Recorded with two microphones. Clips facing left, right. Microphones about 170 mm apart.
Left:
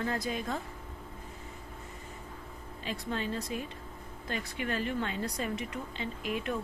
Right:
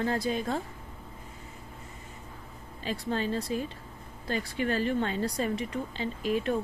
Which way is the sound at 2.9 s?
35° right (ahead or behind).